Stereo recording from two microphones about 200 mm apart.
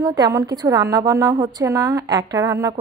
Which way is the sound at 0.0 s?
15° right (ahead or behind).